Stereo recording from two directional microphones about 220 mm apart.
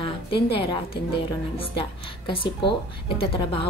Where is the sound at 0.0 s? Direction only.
25° left (ahead or behind).